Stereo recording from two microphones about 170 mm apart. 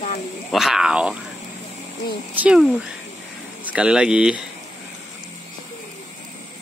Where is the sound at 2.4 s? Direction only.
5° right (ahead or behind).